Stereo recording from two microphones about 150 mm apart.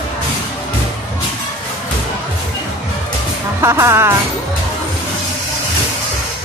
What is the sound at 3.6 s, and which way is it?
Music, 20° right (ahead or behind).